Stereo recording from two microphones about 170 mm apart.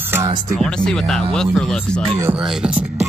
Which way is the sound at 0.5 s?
5° left (ahead or behind).